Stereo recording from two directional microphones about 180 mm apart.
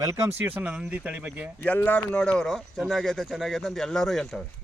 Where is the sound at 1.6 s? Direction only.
10° left (ahead or behind).